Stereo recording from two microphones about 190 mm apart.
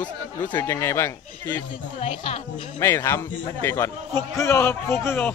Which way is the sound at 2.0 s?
35° left (ahead or behind).